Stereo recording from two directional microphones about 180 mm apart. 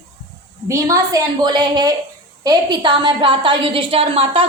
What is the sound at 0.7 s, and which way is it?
A woman's voice, 20° right (ahead or behind).